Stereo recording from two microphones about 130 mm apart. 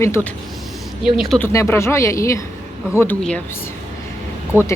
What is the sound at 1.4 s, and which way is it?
Speech, 15° left (ahead or behind).